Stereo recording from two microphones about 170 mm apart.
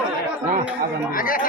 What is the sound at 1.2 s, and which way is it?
Speech, 55° left (ahead or behind).